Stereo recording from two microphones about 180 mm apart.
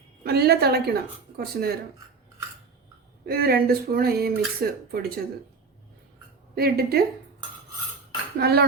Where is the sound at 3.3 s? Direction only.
55° right (ahead or behind).